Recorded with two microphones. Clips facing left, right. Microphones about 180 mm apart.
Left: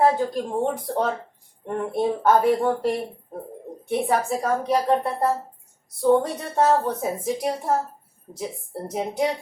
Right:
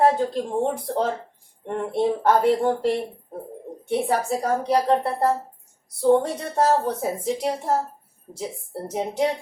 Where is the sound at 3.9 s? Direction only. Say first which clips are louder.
Even; 35° right (ahead or behind).